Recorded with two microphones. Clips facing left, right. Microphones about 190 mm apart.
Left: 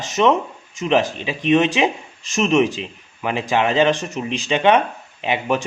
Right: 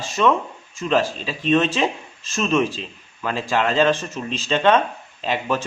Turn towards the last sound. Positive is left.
turn(degrees=15)  # may be behind; listen again after turning